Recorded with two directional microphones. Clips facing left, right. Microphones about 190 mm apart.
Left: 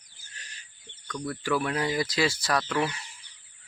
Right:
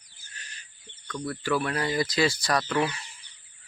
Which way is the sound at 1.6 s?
15° left (ahead or behind).